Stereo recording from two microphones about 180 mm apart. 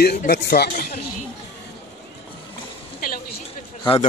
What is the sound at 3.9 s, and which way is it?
Speech, 30° left (ahead or behind).